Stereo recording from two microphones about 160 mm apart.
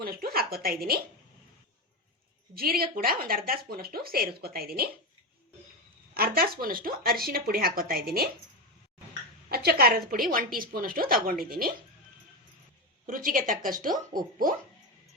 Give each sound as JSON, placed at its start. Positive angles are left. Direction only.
{"t": 0.0, "sound": "speech", "side_deg": -70}
{"t": 2.6, "sound": "speech", "side_deg": -70}
{"t": 6.1, "sound": "speech", "side_deg": -70}
{"t": 9.5, "sound": "a woman's voice", "side_deg": -75}
{"t": 13.1, "sound": "a woman's voice", "side_deg": -60}